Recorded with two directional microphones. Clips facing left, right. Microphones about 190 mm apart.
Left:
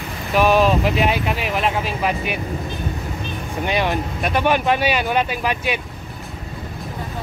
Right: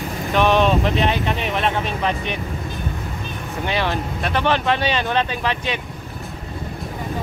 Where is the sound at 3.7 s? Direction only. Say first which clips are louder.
Left 2 dB; 15° left (ahead or behind).